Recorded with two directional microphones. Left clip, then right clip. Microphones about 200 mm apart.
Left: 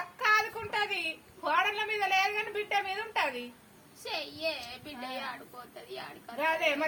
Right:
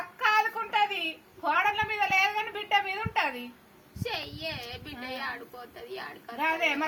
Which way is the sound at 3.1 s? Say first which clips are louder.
Right 2 dB; 15° left (ahead or behind).